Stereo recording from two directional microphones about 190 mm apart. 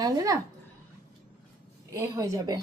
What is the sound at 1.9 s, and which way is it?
Speech, 15° right (ahead or behind).